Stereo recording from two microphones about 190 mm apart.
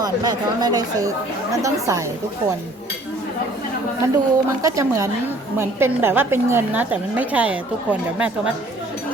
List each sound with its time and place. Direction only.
0.0 s a woman's voice: 20° right (ahead or behind)
4.0 s a woman's voice: 15° right (ahead or behind)